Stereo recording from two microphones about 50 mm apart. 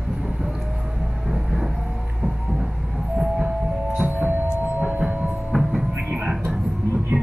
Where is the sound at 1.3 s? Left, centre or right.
Centre.